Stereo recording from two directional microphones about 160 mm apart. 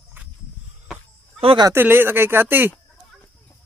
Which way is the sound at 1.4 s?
30° right (ahead or behind).